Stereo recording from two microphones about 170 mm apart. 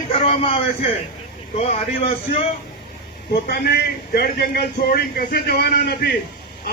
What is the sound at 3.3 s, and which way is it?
A man's voice, 65° left (ahead or behind).